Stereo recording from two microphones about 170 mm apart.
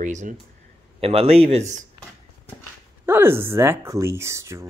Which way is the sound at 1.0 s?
35° right (ahead or behind).